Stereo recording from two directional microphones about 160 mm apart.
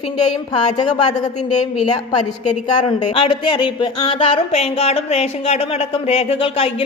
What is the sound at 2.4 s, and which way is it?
Speech, 40° left (ahead or behind).